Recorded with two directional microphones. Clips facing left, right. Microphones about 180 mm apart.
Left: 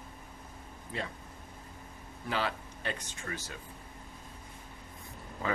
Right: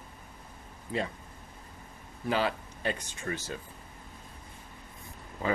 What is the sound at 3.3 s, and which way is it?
Speech, 30° right (ahead or behind).